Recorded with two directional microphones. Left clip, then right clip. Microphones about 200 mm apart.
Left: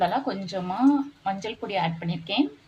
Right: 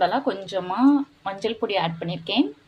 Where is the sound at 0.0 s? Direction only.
30° right (ahead or behind).